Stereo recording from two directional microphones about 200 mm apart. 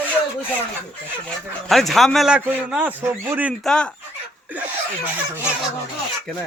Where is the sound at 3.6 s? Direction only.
5° left (ahead or behind).